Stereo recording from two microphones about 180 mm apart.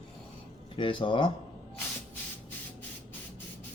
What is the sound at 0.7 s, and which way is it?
Speech, 30° left (ahead or behind).